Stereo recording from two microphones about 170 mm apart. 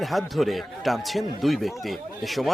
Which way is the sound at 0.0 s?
Centre (ahead or behind).